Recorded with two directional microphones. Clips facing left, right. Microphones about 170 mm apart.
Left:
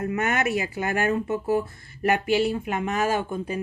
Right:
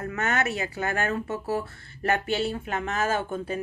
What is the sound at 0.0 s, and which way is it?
Speech, 15° left (ahead or behind).